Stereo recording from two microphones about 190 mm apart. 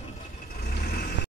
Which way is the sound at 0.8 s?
55° left (ahead or behind).